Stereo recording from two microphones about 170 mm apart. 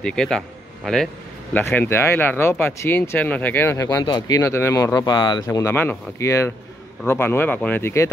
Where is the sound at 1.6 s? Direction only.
15° left (ahead or behind).